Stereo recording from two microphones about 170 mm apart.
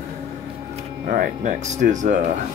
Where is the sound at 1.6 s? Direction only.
45° right (ahead or behind).